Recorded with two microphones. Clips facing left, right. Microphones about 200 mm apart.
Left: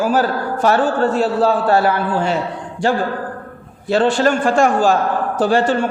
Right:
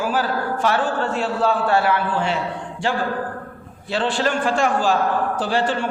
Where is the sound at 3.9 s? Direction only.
45° left (ahead or behind).